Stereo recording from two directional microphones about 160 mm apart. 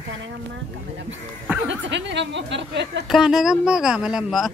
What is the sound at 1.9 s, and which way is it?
Speech, 90° right.